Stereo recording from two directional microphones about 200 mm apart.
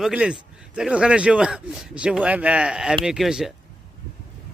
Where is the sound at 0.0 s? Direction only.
5° right (ahead or behind).